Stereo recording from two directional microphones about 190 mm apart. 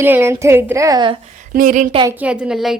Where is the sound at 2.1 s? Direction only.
5° right (ahead or behind).